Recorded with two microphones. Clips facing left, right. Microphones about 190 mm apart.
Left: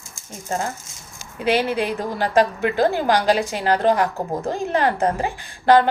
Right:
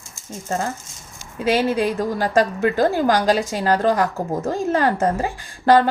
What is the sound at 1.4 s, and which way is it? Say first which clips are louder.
A woman's voice: right 2 dB; 40° right (ahead or behind).